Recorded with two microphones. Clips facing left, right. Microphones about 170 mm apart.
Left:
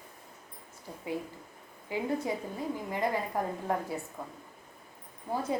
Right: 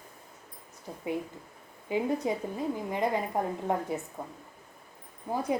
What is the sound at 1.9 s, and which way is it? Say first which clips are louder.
A woman's voice: right 3 dB; 20° right (ahead or behind).